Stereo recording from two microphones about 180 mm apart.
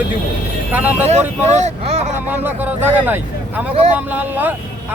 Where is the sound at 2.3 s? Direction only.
10° right (ahead or behind).